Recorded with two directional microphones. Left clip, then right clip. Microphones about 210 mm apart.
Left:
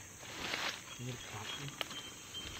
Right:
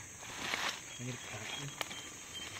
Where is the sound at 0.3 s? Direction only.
50° right (ahead or behind).